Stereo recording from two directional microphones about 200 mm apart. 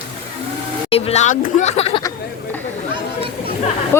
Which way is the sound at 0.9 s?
35° left (ahead or behind).